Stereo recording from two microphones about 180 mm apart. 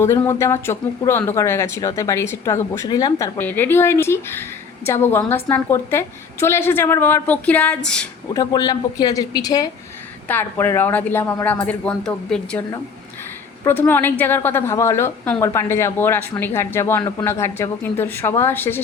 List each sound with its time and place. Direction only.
0.0 s speech: 15° left (ahead or behind)
8.3 s a woman's voice: 20° left (ahead or behind); by 12.6 s 5° left (ahead or behind)
13.7 s speech: 10° left (ahead or behind)